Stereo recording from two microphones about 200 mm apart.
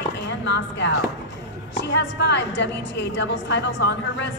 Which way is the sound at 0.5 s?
65° left (ahead or behind).